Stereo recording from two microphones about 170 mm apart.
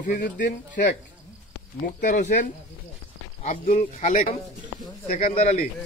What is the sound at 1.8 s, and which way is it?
Speech, 55° left (ahead or behind).